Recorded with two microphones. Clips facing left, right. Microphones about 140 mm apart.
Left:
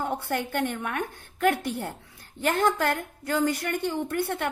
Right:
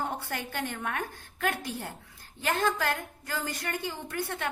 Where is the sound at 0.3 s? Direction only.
60° left (ahead or behind).